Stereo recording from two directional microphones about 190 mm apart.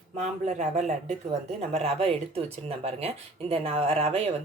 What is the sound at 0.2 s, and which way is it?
Speech, 40° right (ahead or behind).